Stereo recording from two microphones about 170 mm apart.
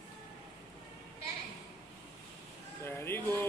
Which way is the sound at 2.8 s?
15° left (ahead or behind).